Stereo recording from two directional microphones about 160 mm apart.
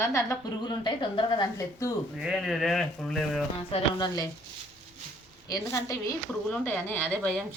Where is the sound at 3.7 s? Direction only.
25° left (ahead or behind).